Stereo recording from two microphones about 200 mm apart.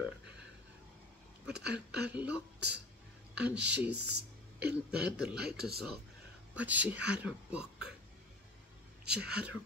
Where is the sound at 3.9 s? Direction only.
55° right (ahead or behind).